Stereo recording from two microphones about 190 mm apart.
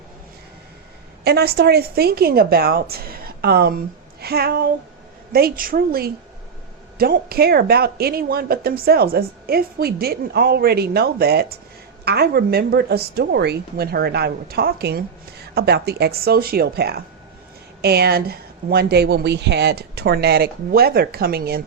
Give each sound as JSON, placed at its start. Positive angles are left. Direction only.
{"t": 1.2, "sound": "speech", "side_deg": -60}